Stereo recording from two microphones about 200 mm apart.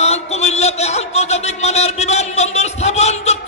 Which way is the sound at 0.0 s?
35° left (ahead or behind).